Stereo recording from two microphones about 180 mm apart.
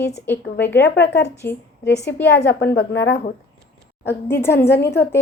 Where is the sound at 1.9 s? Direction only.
70° left (ahead or behind).